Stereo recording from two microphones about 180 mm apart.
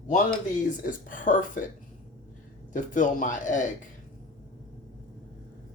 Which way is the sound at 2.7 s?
45° left (ahead or behind).